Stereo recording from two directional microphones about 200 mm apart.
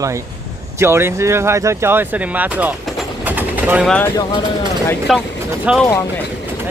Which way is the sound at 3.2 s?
10° right (ahead or behind).